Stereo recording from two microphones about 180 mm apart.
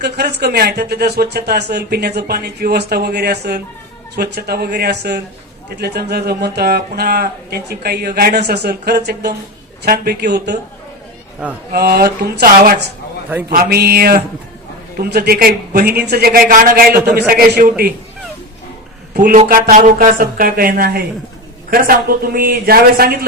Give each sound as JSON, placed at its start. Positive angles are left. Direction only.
{"t": 0.0, "sound": "speech", "side_deg": -65}
{"t": 11.7, "sound": "speech", "side_deg": -60}
{"t": 19.1, "sound": "speech", "side_deg": -55}